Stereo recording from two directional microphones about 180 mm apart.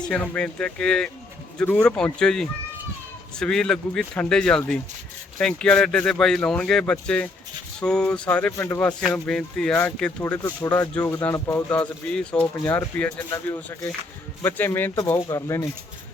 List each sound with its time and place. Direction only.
0.0 s speech: 5° left (ahead or behind)
10.3 s speech: 20° left (ahead or behind)
10.7 s speech: 10° left (ahead or behind)